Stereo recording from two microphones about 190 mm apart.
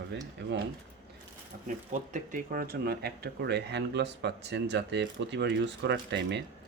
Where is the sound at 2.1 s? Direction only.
45° right (ahead or behind).